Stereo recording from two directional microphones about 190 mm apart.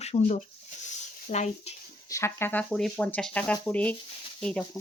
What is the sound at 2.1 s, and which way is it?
A woman's voice, 15° left (ahead or behind).